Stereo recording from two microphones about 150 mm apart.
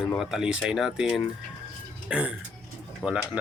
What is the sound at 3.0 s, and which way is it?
Speech, 25° left (ahead or behind).